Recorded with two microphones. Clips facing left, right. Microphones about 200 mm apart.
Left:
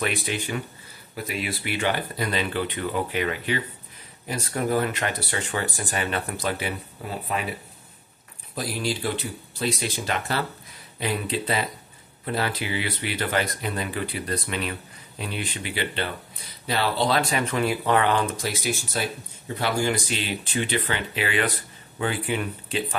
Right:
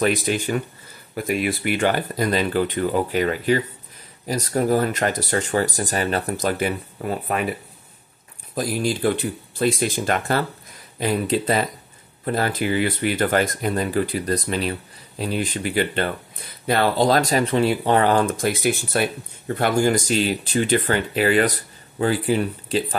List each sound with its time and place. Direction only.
0.0 s speech: 45° right (ahead or behind)
8.5 s speech: 50° right (ahead or behind)